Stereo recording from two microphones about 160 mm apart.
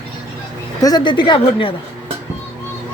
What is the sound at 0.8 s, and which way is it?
Speech, 25° left (ahead or behind).